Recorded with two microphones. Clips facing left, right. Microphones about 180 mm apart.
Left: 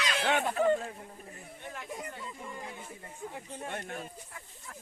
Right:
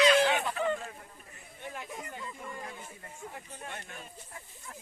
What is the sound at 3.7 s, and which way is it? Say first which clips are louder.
Speech: left 7 dB; 55° left (ahead or behind).